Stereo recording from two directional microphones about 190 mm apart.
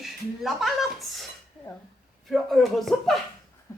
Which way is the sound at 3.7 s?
15° left (ahead or behind).